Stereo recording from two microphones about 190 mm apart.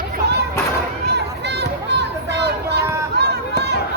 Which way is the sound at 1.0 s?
60° right (ahead or behind).